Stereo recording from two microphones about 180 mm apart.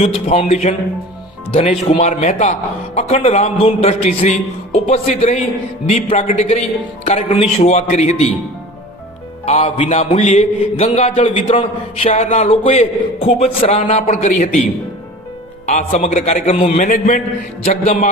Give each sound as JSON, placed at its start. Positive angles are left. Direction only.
{"t": 0.0, "sound": "a man's voice", "side_deg": 35}
{"t": 9.5, "sound": "a man's voice", "side_deg": 35}
{"t": 15.6, "sound": "a man's voice", "side_deg": 40}